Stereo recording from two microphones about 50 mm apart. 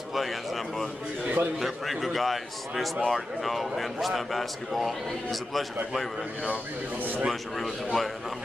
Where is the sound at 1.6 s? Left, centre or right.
Centre.